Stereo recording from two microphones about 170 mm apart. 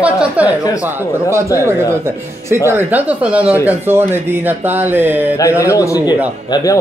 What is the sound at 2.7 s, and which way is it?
Speech, 10° right (ahead or behind).